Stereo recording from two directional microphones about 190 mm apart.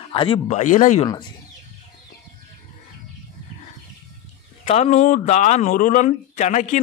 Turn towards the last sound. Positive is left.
turn(degrees=40)  # may be behind; listen again after turning